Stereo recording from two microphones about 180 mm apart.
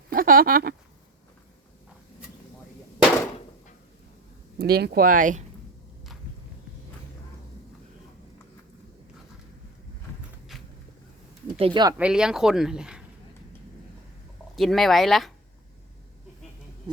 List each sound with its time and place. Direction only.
0.1 s a sound: 55° right (ahead or behind)
4.6 s speech: 60° right (ahead or behind)
11.6 s speech: 25° right (ahead or behind)
11.9 s speech: 5° right (ahead or behind)
14.5 s speech: centre (ahead or behind)